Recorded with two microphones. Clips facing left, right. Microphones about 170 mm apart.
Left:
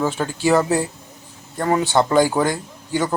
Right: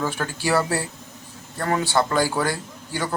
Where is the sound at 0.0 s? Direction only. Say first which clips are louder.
Left 5 dB; 15° left (ahead or behind).